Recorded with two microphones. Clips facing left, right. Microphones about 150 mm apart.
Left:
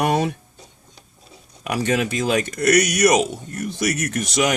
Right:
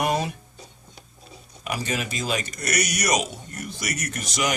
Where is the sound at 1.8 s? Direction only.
65° left (ahead or behind).